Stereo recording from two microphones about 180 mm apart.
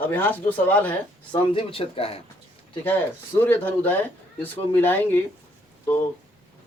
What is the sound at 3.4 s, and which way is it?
Speech, 10° left (ahead or behind).